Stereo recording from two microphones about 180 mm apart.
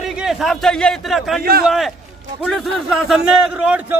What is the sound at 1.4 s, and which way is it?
Speech, 60° right (ahead or behind).